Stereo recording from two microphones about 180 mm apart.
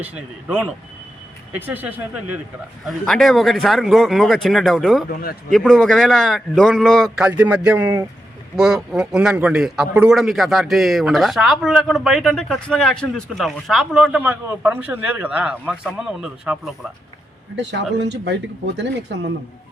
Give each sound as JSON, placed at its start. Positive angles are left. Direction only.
{"t": 0.0, "sound": "speech", "side_deg": -5}
{"t": 2.8, "sound": "speech", "side_deg": 0}
{"t": 7.3, "sound": "speech", "side_deg": -10}
{"t": 17.6, "sound": "speech", "side_deg": -75}